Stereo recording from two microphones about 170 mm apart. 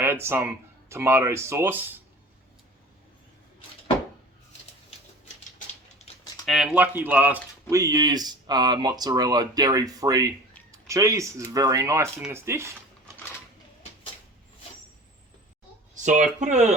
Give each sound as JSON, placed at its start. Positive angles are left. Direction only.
{"t": 0.0, "sound": "speech", "side_deg": -15}
{"t": 6.1, "sound": "typing", "side_deg": 40}
{"t": 6.4, "sound": "speech", "side_deg": 0}
{"t": 16.4, "sound": "speech", "side_deg": -45}